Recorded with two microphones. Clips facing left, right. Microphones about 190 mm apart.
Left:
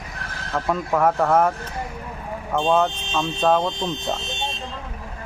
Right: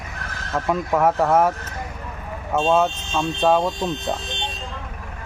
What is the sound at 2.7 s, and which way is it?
Speech, 15° right (ahead or behind).